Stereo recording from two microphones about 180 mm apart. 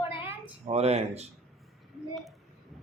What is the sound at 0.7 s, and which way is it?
Speech, 35° right (ahead or behind).